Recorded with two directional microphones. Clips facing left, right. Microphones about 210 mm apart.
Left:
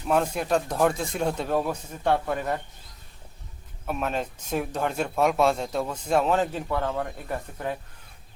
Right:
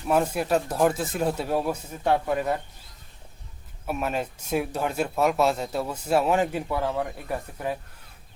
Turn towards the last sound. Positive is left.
turn(degrees=-5)  # may be behind; listen again after turning